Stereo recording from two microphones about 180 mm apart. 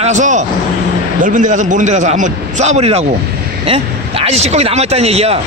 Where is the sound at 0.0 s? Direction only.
40° right (ahead or behind).